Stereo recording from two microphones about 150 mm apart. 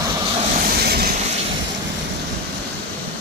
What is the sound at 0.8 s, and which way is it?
Vehicle, 90° right.